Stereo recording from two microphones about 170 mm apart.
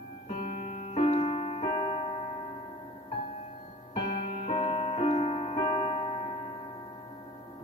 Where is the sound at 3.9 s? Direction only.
35° left (ahead or behind).